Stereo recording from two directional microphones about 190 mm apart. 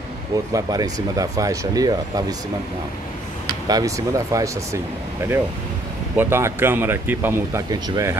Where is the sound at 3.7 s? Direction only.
15° right (ahead or behind).